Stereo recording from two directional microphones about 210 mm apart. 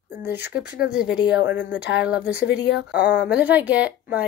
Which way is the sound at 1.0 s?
5° right (ahead or behind).